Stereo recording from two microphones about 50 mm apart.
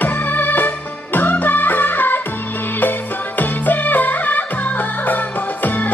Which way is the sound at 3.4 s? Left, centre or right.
Left.